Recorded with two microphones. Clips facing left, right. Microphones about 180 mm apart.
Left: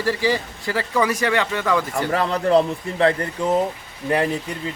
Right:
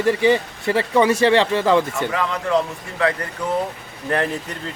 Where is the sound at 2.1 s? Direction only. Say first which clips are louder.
Left 4 dB; 35° left (ahead or behind).